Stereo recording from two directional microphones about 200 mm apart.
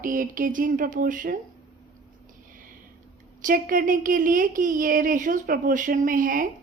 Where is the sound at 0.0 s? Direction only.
40° right (ahead or behind).